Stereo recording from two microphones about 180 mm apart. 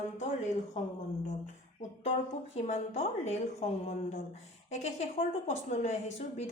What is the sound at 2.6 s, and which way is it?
A woman's voice, 35° left (ahead or behind).